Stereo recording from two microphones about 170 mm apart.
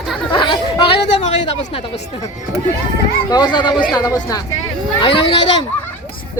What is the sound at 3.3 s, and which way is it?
Speech, 25° left (ahead or behind).